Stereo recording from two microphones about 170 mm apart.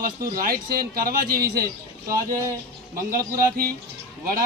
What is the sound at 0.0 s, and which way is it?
A man's voice, 60° right (ahead or behind).